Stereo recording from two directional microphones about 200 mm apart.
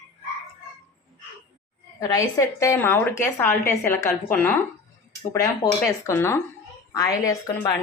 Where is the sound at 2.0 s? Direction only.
15° left (ahead or behind).